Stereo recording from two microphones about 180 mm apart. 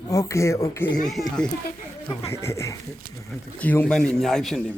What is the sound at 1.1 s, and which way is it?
Speech, centre (ahead or behind).